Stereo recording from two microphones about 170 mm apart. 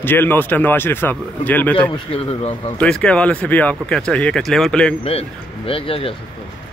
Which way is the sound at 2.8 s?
5° left (ahead or behind).